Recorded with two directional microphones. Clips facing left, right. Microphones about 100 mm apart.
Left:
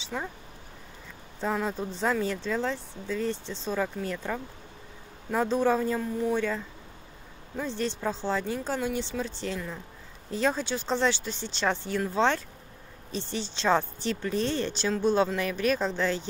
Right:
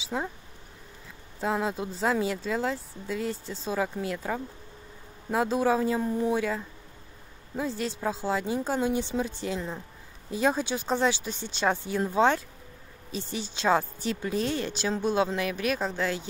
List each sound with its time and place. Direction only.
0.1 s speech: 15° right (ahead or behind)
1.4 s speech: 10° right (ahead or behind)